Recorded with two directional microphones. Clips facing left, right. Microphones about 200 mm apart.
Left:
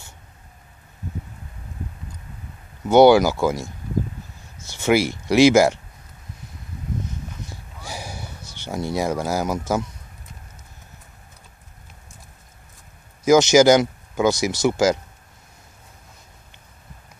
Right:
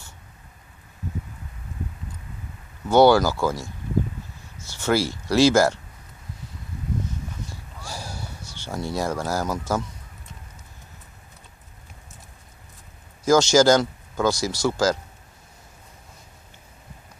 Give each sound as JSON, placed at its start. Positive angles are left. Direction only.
{"t": 2.9, "sound": "speech", "side_deg": 15}
{"t": 4.7, "sound": "speech", "side_deg": 20}
{"t": 7.4, "sound": "a sound", "side_deg": 20}
{"t": 8.5, "sound": "speech", "side_deg": 15}
{"t": 13.2, "sound": "speech", "side_deg": 20}